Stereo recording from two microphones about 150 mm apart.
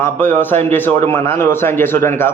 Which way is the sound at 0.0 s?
10° left (ahead or behind).